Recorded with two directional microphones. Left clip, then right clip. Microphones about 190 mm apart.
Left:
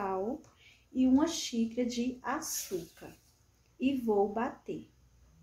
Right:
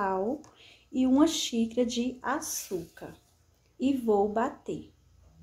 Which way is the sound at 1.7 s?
30° right (ahead or behind).